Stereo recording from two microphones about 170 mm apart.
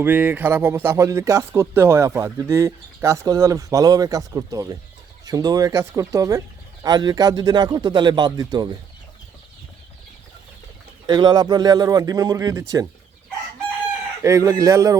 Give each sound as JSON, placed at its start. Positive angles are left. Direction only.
{"t": 0.0, "sound": "speech", "side_deg": -10}
{"t": 11.0, "sound": "speech", "side_deg": -25}
{"t": 14.2, "sound": "speech", "side_deg": -20}